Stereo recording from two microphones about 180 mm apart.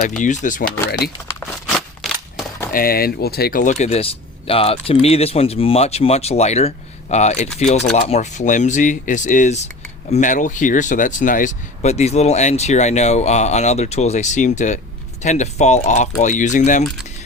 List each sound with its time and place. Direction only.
0.2 s speech: 45° left (ahead or behind)
1.6 s scissors: centre (ahead or behind)
2.7 s speech: 55° left (ahead or behind)